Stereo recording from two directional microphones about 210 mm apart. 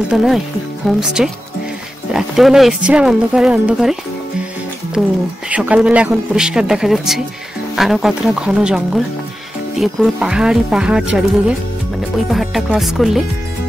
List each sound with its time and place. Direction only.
0.1 s speech: centre (ahead or behind)